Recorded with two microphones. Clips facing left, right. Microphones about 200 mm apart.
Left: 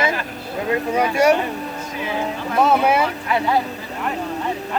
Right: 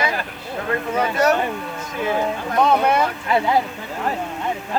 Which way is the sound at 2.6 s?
5° left (ahead or behind).